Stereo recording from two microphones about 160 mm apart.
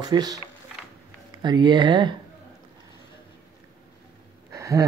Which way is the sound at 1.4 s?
30° right (ahead or behind).